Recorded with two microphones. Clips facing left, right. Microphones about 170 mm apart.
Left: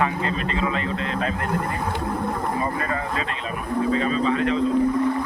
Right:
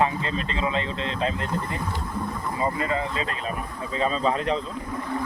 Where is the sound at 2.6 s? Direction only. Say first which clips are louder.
Even; 20° right (ahead or behind).